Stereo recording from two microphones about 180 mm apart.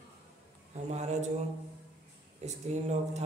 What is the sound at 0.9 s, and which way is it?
Speech, 40° right (ahead or behind).